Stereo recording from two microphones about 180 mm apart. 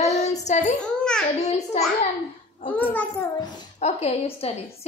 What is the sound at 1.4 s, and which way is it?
Speech, 35° left (ahead or behind).